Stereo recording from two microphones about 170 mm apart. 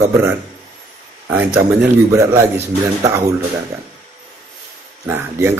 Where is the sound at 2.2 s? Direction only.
15° right (ahead or behind).